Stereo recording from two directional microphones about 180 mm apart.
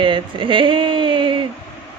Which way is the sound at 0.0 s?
25° right (ahead or behind).